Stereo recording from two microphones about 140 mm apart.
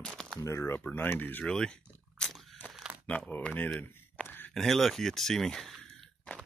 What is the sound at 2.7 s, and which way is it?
Crumpling, 5° right (ahead or behind).